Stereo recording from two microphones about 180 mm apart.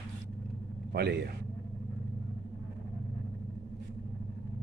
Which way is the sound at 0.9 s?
65° right (ahead or behind).